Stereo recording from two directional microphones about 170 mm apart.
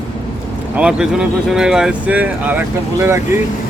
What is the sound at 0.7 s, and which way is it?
Speech, 5° right (ahead or behind).